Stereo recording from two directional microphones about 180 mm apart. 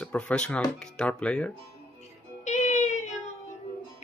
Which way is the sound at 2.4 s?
40° left (ahead or behind).